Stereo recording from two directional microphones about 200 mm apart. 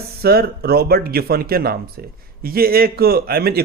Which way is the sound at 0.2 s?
50° right (ahead or behind).